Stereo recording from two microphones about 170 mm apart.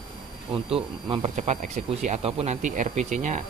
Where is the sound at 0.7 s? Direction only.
30° right (ahead or behind).